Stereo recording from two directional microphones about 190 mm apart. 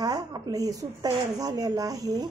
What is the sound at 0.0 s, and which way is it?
A woman's voice, 20° right (ahead or behind).